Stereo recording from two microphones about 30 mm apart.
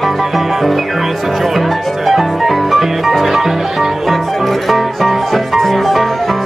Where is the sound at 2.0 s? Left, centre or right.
Centre.